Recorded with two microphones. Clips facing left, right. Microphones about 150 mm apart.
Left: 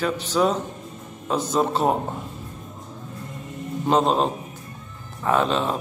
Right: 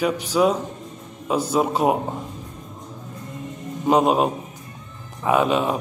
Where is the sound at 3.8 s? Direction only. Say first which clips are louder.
Right 2 dB; 10° right (ahead or behind).